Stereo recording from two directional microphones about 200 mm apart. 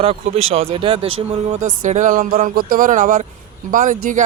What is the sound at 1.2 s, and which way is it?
Speech, 35° right (ahead or behind).